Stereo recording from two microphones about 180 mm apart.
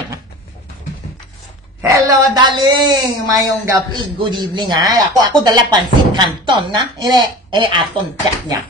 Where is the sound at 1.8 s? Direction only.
20° right (ahead or behind).